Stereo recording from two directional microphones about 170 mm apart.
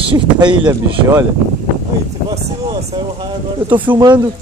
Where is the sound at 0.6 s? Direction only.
15° right (ahead or behind).